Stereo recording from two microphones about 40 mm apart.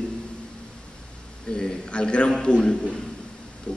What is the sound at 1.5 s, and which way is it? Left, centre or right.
A man's voice, centre.